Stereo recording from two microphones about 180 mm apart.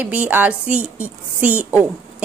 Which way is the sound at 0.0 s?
10° right (ahead or behind).